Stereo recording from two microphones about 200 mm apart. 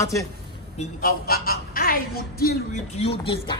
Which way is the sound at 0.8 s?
45° left (ahead or behind).